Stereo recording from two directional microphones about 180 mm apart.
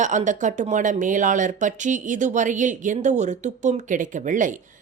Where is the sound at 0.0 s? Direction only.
45° right (ahead or behind).